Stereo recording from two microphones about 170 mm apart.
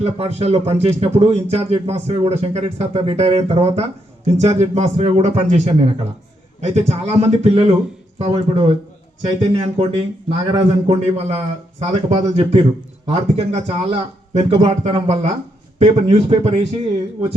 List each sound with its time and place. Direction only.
0.0 s a man's voice: 40° right (ahead or behind)